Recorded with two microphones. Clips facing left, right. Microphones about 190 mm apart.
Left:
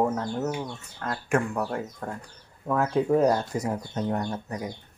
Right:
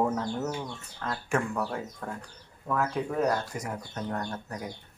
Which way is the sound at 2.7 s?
25° left (ahead or behind).